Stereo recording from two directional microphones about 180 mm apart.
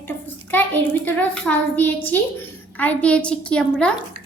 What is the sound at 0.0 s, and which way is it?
A child's voice, 10° left (ahead or behind).